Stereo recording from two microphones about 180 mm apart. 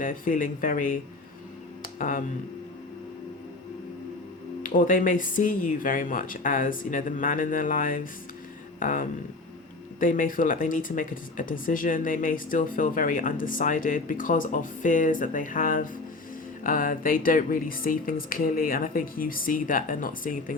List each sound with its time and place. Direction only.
0.0 s speech: 50° left (ahead or behind)
2.0 s speech: 50° left (ahead or behind)
4.6 s speech: 50° left (ahead or behind)